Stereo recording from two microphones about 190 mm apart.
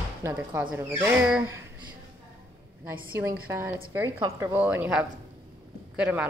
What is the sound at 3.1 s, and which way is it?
A woman's voice, 10° right (ahead or behind).